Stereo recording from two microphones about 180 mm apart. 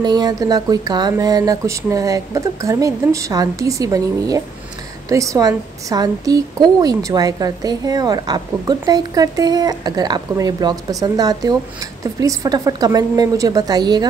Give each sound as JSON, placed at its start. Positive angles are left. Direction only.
{"t": 0.0, "sound": "a woman's voice", "side_deg": -25}